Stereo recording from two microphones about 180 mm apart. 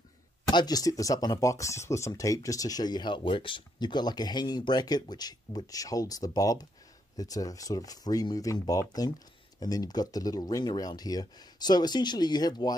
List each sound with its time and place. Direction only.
0.5 s speech: 25° left (ahead or behind)